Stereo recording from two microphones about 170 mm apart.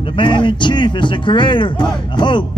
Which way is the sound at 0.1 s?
30° left (ahead or behind).